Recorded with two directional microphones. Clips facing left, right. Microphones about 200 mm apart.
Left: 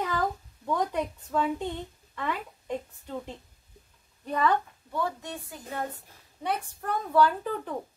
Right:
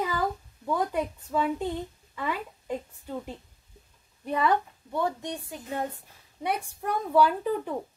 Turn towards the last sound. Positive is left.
turn(degrees=-10)  # may be behind; listen again after turning